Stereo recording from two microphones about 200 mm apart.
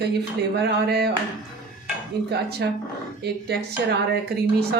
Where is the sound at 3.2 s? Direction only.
55° right (ahead or behind).